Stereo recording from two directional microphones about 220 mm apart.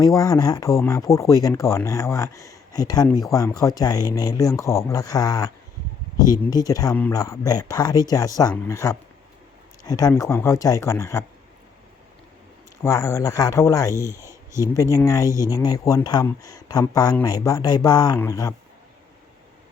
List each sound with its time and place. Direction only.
0.0 s speech: 15° left (ahead or behind)
6.5 s speech: 15° left (ahead or behind)
12.8 s speech: 15° left (ahead or behind)
15.3 s speech: 15° right (ahead or behind)
15.5 s speech: 15° left (ahead or behind)